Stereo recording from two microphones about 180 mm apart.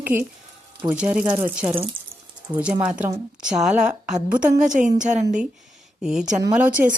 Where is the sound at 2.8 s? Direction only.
5° right (ahead or behind).